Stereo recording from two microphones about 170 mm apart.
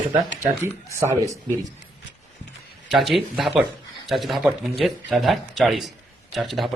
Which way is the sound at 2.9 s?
Centre (ahead or behind).